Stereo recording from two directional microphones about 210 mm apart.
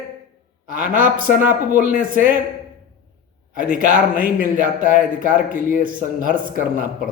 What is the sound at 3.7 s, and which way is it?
A man's voice, 40° right (ahead or behind).